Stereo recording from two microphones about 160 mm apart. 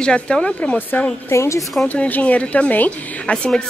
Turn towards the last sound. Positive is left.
turn(degrees=5)  # may be behind; listen again after turning